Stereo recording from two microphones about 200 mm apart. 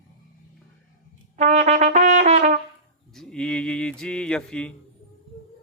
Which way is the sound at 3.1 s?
5° left (ahead or behind).